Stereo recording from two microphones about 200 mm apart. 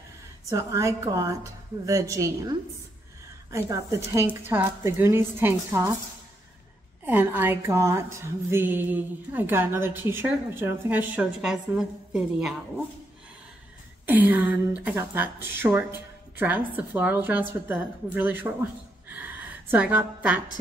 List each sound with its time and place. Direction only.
0.5 s a woman's voice: 15° right (ahead or behind)
3.5 s a woman's voice: 15° right (ahead or behind)
7.1 s a woman's voice: 10° right (ahead or behind)
14.0 s a woman's voice: 10° right (ahead or behind)